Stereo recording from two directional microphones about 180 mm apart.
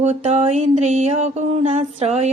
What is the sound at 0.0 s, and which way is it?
Mantra, 35° right (ahead or behind).